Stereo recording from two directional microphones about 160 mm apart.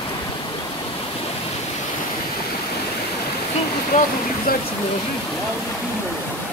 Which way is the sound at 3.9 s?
50° left (ahead or behind).